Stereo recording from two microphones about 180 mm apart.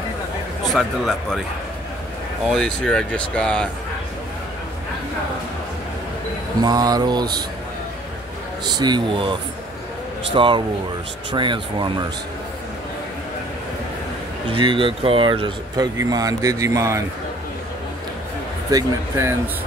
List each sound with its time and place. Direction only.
0.7 s speech: centre (ahead or behind)
2.5 s speech: 5° left (ahead or behind)
6.6 s speech: 20° right (ahead or behind)
8.6 s speech: 25° right (ahead or behind)
14.5 s speech: 30° right (ahead or behind)
18.7 s speech: 15° right (ahead or behind)